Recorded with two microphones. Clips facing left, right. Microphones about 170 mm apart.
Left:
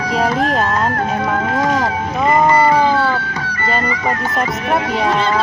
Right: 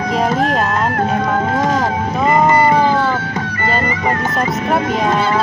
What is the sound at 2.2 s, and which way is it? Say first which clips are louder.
Music: even; 20° right (ahead or behind).